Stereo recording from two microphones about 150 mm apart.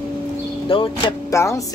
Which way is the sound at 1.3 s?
20° left (ahead or behind).